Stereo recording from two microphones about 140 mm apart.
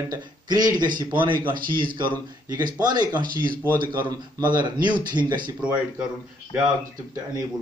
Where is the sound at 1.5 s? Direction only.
90° right.